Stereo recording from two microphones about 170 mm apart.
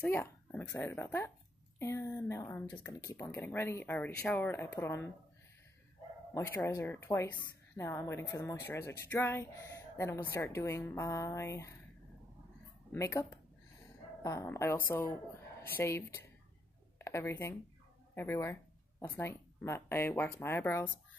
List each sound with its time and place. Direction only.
0.0 s a woman's voice: 15° left (ahead or behind)
6.3 s a woman's voice: 15° left (ahead or behind)
12.9 s a woman's voice: 15° left (ahead or behind)